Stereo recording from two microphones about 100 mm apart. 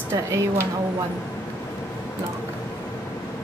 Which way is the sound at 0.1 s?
25° right (ahead or behind).